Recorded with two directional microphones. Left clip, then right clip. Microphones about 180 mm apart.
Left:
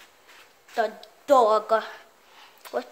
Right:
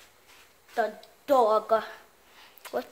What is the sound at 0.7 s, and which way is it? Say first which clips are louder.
A woman's voice: left 2 dB; 15° left (ahead or behind).